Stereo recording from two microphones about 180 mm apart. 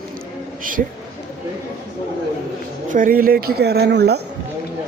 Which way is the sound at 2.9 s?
50° right (ahead or behind).